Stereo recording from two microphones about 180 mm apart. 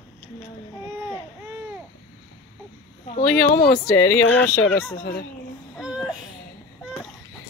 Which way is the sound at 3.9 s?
15° left (ahead or behind).